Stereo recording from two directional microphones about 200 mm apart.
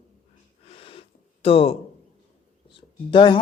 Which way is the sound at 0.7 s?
25° left (ahead or behind).